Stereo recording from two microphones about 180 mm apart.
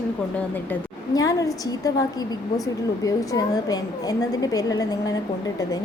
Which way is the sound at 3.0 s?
20° left (ahead or behind).